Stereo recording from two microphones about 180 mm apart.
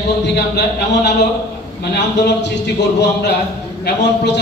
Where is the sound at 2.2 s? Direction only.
75° left (ahead or behind).